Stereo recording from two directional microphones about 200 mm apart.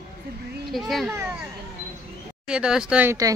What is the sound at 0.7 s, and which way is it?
Speech, centre (ahead or behind).